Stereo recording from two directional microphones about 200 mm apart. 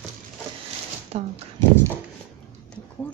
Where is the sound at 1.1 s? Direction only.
35° right (ahead or behind).